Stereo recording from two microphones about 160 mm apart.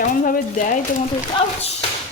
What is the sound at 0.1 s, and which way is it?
Speech, 50° left (ahead or behind).